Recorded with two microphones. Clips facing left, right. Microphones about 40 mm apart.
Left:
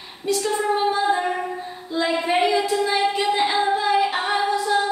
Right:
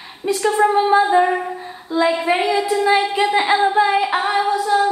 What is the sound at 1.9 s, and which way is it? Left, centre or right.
Female singing, centre.